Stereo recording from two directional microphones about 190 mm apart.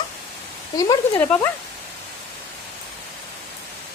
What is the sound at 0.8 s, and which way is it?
Speech, 20° left (ahead or behind).